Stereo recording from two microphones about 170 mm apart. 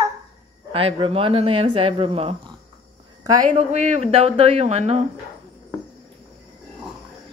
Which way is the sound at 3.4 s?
40° right (ahead or behind).